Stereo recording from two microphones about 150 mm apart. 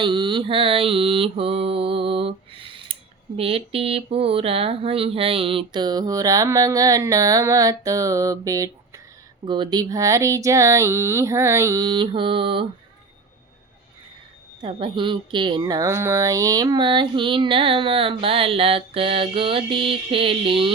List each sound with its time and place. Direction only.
0.0 s mantra: 35° right (ahead or behind)
9.5 s speech: 30° right (ahead or behind)
14.6 s mantra: 35° right (ahead or behind)